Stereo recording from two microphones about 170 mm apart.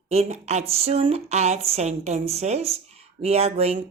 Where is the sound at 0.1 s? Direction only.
40° right (ahead or behind).